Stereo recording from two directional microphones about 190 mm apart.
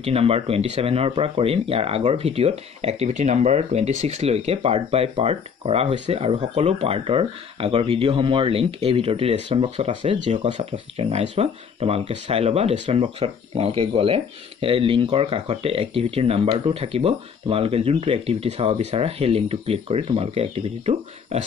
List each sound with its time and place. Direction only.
0.0 s speech: 30° right (ahead or behind)
10.1 s speech: 40° right (ahead or behind)